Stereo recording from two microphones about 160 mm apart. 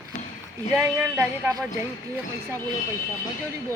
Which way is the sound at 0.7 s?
15° right (ahead or behind).